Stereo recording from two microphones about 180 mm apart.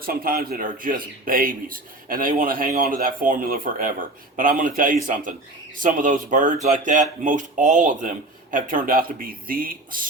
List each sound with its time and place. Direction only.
0.0 s a man's voice: 55° right (ahead or behind)